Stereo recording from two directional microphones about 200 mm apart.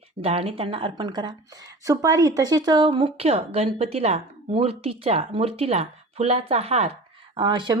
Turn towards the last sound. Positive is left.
turn(degrees=-25)  # may be behind; listen again after turning